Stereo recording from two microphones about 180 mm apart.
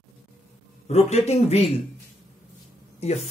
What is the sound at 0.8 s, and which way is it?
Speech, 35° left (ahead or behind).